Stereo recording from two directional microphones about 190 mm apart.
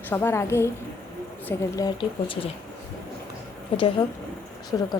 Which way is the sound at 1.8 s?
25° left (ahead or behind).